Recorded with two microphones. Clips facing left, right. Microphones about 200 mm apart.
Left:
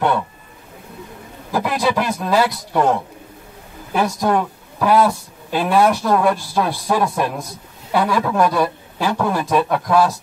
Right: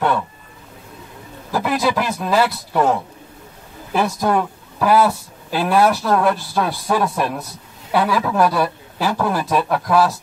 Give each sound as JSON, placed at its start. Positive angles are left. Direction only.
{"t": 1.5, "sound": "speech", "side_deg": 0}